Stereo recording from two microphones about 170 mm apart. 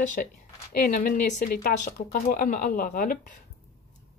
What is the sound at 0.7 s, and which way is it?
Speech, 60° left (ahead or behind).